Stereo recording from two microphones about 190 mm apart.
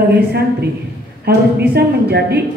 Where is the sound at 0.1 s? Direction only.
60° right (ahead or behind).